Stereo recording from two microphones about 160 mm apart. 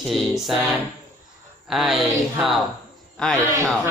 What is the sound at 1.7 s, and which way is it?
Speech, centre (ahead or behind).